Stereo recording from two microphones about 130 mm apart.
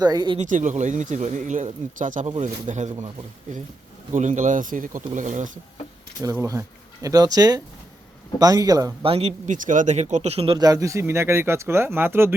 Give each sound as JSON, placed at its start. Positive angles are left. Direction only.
{"t": 0.0, "sound": "speech", "side_deg": -30}
{"t": 0.3, "sound": "speech", "side_deg": -75}
{"t": 4.1, "sound": "speech", "side_deg": -75}
{"t": 6.3, "sound": "speech", "side_deg": -20}
{"t": 9.0, "sound": "speech", "side_deg": -55}
{"t": 9.6, "sound": "speech", "side_deg": -75}
{"t": 10.6, "sound": "speech", "side_deg": -25}